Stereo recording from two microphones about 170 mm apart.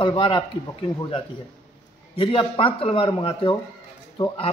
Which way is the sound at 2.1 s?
30° left (ahead or behind).